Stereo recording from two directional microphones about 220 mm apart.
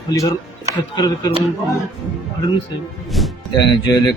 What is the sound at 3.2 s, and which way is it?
Music, centre (ahead or behind).